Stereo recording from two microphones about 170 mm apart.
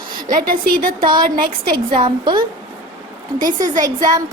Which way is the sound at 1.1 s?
25° right (ahead or behind).